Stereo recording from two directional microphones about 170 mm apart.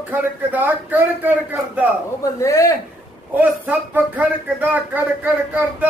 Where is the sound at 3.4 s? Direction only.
10° right (ahead or behind).